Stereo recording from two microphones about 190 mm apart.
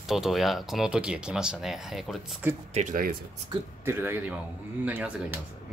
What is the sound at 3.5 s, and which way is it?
Speech, 25° right (ahead or behind).